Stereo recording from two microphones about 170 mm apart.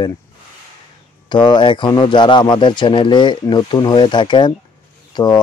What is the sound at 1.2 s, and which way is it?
Speech, 25° left (ahead or behind).